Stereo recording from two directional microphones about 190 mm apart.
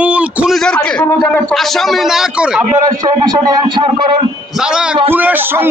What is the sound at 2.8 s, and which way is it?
A man's voice, 20° right (ahead or behind).